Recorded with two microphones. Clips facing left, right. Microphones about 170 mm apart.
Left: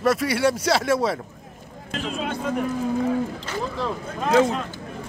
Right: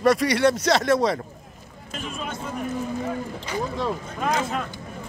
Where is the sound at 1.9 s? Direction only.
90° left.